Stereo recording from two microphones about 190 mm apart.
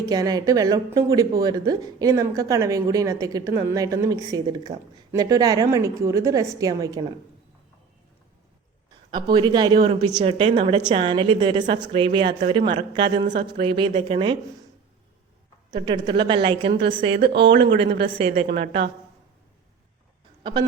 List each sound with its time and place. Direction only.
0.0 s speech: 20° right (ahead or behind)
9.3 s a woman's voice: 25° right (ahead or behind)
15.7 s a woman's voice: 25° right (ahead or behind)
17.2 s speech: 60° right (ahead or behind)
18.0 s a woman's voice: 30° right (ahead or behind)
20.4 s speech: 20° right (ahead or behind)